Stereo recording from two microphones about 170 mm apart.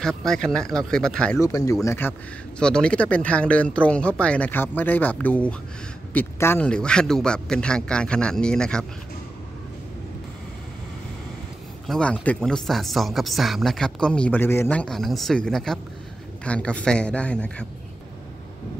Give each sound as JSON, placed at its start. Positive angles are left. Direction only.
{"t": 0.0, "sound": "speech", "side_deg": 5}
{"t": 1.4, "sound": "speech", "side_deg": 20}
{"t": 11.9, "sound": "speech", "side_deg": 5}